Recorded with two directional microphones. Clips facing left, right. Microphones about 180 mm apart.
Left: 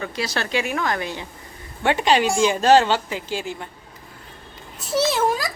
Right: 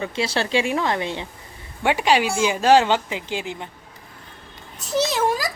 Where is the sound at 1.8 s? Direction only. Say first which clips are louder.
Left 1 dB; 10° right (ahead or behind).